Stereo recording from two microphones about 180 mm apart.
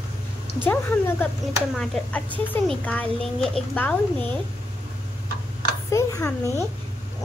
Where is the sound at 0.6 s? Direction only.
10° left (ahead or behind).